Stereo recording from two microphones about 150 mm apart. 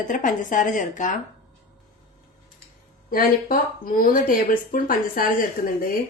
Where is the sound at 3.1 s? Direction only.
80° left.